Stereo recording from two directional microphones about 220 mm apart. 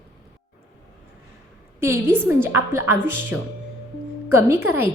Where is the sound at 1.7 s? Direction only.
10° right (ahead or behind).